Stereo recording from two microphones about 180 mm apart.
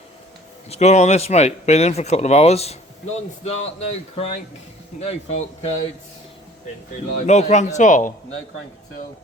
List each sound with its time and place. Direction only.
0.7 s speech: 40° left (ahead or behind)
7.2 s speech: 40° left (ahead or behind)